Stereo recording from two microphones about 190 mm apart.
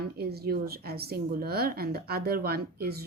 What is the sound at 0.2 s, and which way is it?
A woman's voice, 55° right (ahead or behind).